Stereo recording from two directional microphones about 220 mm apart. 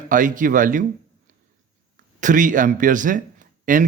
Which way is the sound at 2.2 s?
35° right (ahead or behind).